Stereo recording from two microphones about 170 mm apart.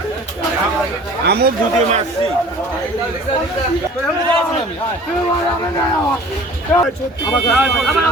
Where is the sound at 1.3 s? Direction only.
65° right (ahead or behind).